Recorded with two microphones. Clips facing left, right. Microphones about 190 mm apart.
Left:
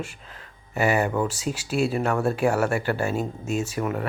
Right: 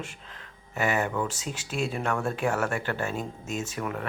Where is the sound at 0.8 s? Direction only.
35° left (ahead or behind).